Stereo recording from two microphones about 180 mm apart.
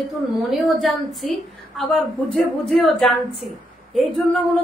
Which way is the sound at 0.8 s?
Centre (ahead or behind).